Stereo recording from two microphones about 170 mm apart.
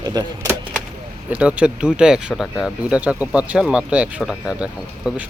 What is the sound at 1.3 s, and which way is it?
Speech, 5° right (ahead or behind).